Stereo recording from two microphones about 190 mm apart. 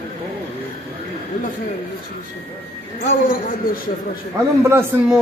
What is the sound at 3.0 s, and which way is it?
Speech, 50° left (ahead or behind).